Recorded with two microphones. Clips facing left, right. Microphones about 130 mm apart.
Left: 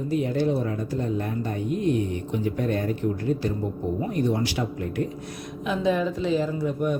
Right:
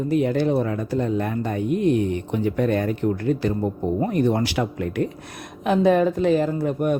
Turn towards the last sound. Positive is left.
turn(degrees=-60)  # may be behind; listen again after turning